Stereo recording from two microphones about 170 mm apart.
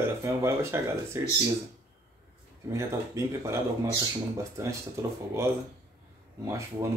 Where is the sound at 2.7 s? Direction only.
15° right (ahead or behind).